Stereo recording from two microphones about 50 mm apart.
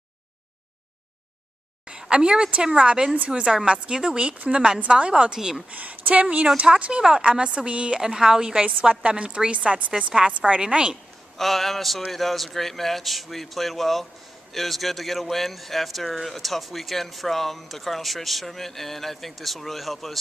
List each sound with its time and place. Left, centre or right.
1.9 s a woman's voice: centre
5.7 s speech: right
11.3 s speech: centre